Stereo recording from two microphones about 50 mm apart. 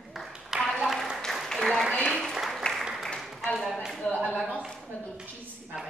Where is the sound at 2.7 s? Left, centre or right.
Centre.